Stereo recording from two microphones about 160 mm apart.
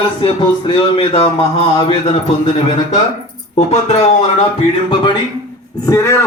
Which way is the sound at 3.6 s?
40° left (ahead or behind).